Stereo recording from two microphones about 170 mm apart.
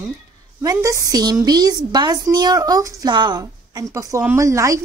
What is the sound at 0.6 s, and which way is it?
A woman's voice, 20° right (ahead or behind).